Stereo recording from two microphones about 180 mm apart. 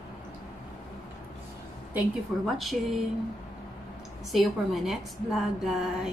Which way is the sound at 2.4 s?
Centre (ahead or behind).